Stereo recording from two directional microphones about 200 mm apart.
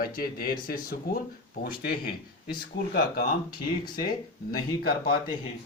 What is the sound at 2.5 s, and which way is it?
Speech, 50° left (ahead or behind).